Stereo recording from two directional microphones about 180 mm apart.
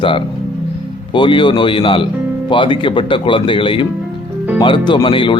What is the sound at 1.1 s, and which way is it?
Speech, 25° left (ahead or behind).